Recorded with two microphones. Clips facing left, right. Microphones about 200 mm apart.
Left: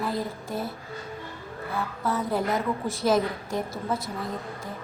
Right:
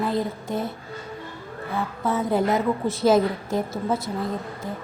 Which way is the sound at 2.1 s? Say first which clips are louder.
Right 5 dB; 25° right (ahead or behind).